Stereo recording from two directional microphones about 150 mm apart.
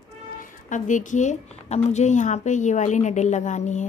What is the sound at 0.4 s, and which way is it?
A woman's voice, 55° left (ahead or behind).